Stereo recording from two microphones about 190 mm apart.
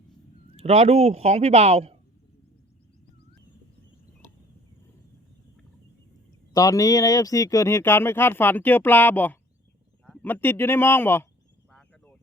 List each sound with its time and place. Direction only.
0.5 s speech: 35° right (ahead or behind)
6.5 s speech: 20° left (ahead or behind)
11.7 s a sound: 5° left (ahead or behind)